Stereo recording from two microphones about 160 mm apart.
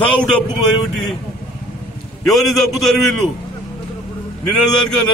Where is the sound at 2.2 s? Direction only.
Centre (ahead or behind).